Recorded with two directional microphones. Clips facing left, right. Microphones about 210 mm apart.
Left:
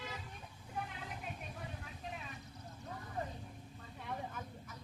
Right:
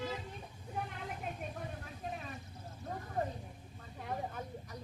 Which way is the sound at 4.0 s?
40° right (ahead or behind).